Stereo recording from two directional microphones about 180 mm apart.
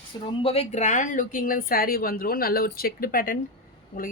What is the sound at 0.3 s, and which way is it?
Speech, 35° left (ahead or behind).